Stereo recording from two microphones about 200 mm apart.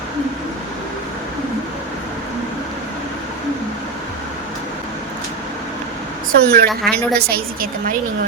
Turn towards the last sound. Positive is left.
turn(degrees=-50)  # may be behind; listen again after turning